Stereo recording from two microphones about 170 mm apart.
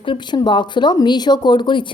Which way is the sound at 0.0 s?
30° left (ahead or behind).